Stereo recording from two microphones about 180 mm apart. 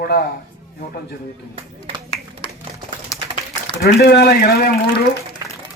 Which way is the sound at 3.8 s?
65° left (ahead or behind).